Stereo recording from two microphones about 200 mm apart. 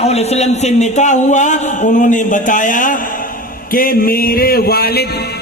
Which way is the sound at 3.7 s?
45° left (ahead or behind).